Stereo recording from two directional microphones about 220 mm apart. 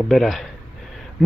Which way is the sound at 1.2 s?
Centre (ahead or behind).